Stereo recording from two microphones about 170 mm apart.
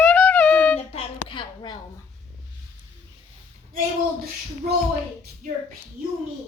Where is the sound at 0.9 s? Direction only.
30° left (ahead or behind).